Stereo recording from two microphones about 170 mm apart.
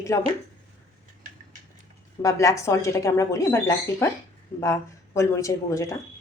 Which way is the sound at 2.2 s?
20° left (ahead or behind).